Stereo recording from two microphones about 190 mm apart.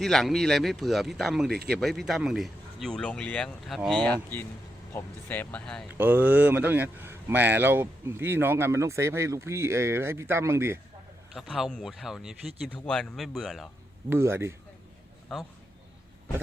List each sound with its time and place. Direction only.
0.0 s speech: centre (ahead or behind)
1.5 s speech: 55° right (ahead or behind)
1.8 s speech: centre (ahead or behind)
6.0 s speech: 10° right (ahead or behind)
11.3 s speech: centre (ahead or behind)
14.1 s speech: 15° right (ahead or behind)
15.3 s speech: centre (ahead or behind)